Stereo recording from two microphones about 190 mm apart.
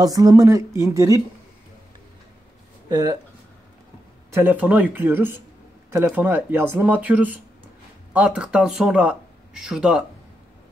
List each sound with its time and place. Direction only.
0.0 s speech: 20° right (ahead or behind)
2.9 s speech: 20° right (ahead or behind)
4.3 s speech: 10° right (ahead or behind)